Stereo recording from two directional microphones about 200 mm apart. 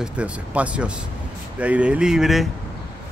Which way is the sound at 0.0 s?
5° right (ahead or behind).